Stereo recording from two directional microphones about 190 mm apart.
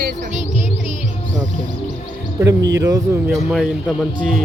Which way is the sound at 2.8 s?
20° right (ahead or behind).